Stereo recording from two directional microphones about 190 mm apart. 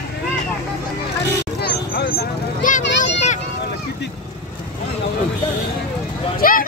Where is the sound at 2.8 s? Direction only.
70° left (ahead or behind).